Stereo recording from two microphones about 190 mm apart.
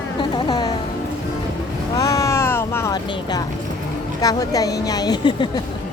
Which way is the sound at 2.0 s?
20° left (ahead or behind).